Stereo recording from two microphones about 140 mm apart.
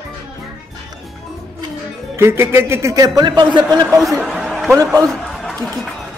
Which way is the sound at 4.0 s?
Centre (ahead or behind).